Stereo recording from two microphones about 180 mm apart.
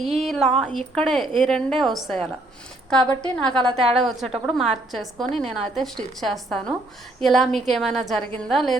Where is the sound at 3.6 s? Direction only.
35° right (ahead or behind).